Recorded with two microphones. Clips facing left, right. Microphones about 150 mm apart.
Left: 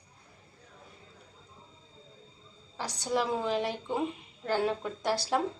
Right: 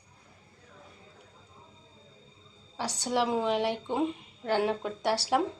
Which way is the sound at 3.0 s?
15° right (ahead or behind).